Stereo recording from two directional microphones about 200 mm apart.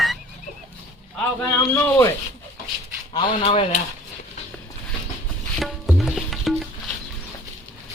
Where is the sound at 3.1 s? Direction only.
25° left (ahead or behind).